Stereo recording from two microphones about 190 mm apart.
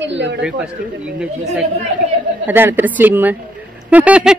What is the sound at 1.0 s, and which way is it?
Speech, 5° right (ahead or behind).